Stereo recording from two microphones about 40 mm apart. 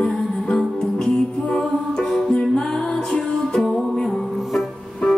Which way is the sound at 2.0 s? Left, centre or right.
Centre.